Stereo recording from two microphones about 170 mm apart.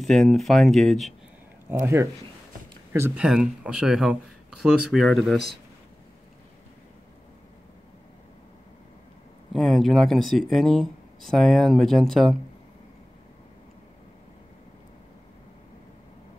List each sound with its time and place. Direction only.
0.0 s speech: centre (ahead or behind)
1.7 s speech: 15° right (ahead or behind); by 5.5 s centre (ahead or behind)
9.5 s speech: centre (ahead or behind)